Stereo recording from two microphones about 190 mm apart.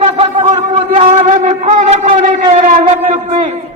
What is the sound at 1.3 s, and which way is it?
Wind instrument, 40° right (ahead or behind).